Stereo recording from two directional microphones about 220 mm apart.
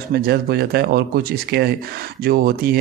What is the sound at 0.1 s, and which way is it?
Speech, 45° right (ahead or behind).